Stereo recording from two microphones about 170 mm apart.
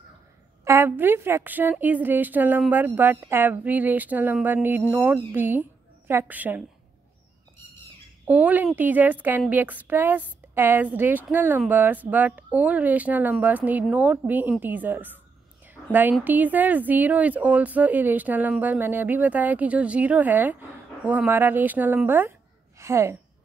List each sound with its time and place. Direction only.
0.7 s a woman's voice: 15° right (ahead or behind)
8.3 s a woman's voice: 10° right (ahead or behind)